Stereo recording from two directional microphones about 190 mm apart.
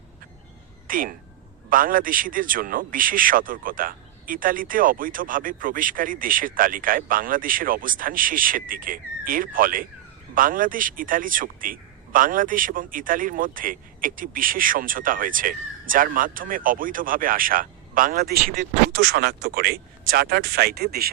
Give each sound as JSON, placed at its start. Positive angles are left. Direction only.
{"t": 0.9, "sound": "a man's voice", "side_deg": -45}